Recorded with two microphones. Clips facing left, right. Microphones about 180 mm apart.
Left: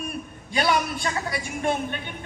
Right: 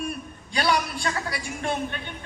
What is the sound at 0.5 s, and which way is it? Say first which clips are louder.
Speech: left 1 dB; 20° left (ahead or behind).